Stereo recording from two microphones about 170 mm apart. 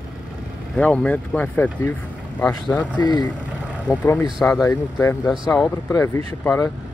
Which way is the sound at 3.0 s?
25° left (ahead or behind).